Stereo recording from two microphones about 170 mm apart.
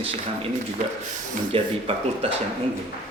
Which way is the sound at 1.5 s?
35° right (ahead or behind).